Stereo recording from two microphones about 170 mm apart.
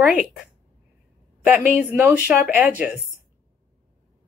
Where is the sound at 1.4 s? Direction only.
10° right (ahead or behind).